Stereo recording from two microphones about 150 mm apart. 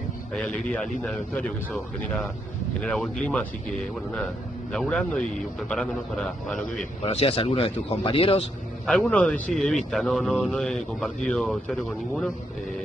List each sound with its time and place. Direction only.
0.3 s a man's voice: 10° left (ahead or behind)
4.7 s a man's voice: 5° left (ahead or behind)
7.0 s speech: 40° left (ahead or behind)
8.8 s speech: 5° left (ahead or behind)